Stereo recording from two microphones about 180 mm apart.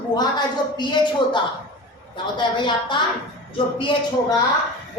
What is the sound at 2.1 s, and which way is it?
A woman's voice, 25° left (ahead or behind).